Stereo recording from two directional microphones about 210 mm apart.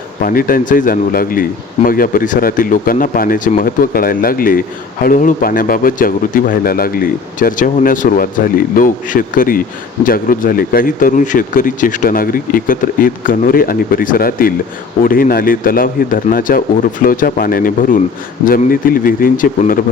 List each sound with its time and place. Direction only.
0.2 s speech: 45° left (ahead or behind)